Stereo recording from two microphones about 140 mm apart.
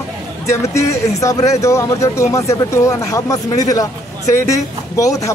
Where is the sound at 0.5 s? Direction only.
20° left (ahead or behind).